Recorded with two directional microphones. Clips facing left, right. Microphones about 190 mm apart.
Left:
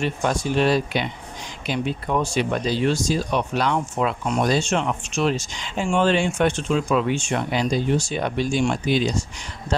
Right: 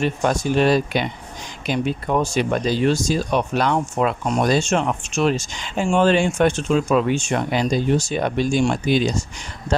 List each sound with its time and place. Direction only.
0.0 s speech: 45° right (ahead or behind)